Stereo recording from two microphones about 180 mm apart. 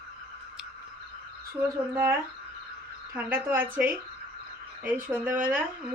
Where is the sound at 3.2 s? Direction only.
10° right (ahead or behind).